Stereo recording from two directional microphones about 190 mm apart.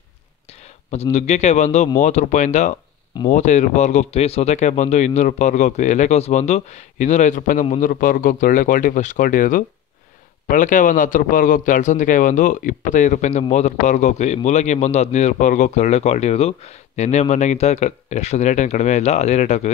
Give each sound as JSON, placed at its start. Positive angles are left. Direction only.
{"t": 1.1, "sound": "a man's voice", "side_deg": 35}